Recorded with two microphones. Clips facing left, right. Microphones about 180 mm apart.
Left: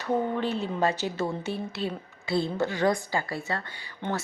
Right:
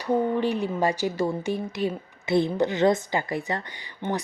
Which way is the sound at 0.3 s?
15° right (ahead or behind).